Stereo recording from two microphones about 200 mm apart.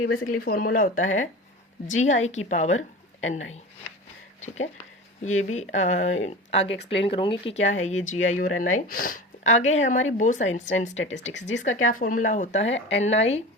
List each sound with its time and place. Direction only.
0.4 s speech: 45° left (ahead or behind)
4.4 s speech: 35° left (ahead or behind)